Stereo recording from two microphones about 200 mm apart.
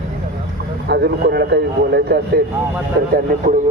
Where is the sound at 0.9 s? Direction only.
55° right (ahead or behind).